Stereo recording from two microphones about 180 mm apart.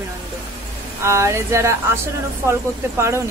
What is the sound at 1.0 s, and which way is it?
Speech, 15° right (ahead or behind).